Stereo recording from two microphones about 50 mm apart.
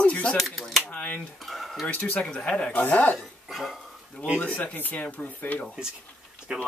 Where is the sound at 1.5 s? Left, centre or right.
Centre.